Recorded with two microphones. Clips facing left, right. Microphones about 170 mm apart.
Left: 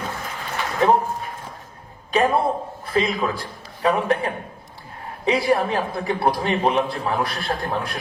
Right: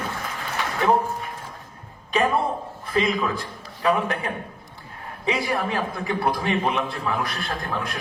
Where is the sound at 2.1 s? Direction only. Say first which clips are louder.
Left 3 dB; 35° left (ahead or behind).